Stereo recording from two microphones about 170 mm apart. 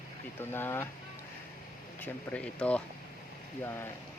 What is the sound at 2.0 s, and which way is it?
Speech, 5° left (ahead or behind).